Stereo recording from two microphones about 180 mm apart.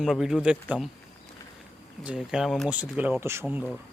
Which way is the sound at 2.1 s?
5° right (ahead or behind).